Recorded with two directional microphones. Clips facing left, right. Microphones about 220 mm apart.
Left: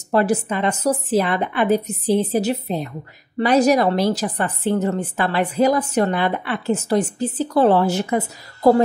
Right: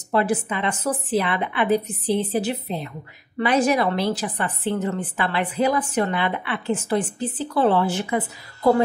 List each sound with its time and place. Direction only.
0.1 s a woman's voice: 40° left (ahead or behind)